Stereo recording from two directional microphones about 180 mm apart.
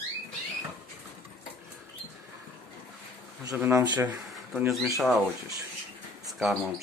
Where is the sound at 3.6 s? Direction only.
15° right (ahead or behind).